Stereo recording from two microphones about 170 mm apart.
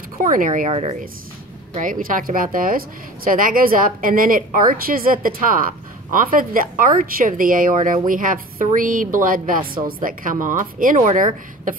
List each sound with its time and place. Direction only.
0.2 s a woman's voice: 50° right (ahead or behind)
1.8 s a woman's voice: 50° right (ahead or behind)